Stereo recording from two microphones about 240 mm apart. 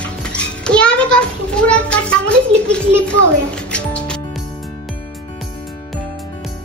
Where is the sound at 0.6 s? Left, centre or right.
Centre.